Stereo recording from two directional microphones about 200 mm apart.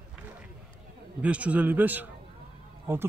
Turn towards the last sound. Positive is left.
turn(degrees=-10)  # may be behind; listen again after turning